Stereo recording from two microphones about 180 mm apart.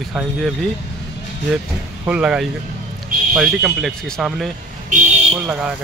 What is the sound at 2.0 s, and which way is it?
Speech, 5° right (ahead or behind).